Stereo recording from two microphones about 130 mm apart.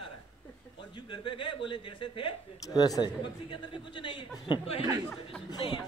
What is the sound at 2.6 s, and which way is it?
A man's voice, 30° left (ahead or behind).